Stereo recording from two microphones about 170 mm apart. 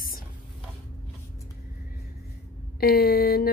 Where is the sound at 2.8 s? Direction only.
65° left (ahead or behind).